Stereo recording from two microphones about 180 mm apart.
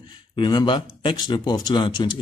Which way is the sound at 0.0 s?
25° left (ahead or behind).